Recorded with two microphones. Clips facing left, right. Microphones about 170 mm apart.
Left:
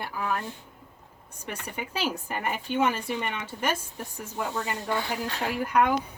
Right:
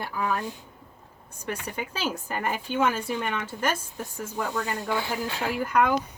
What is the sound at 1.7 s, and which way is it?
Speech, 10° left (ahead or behind).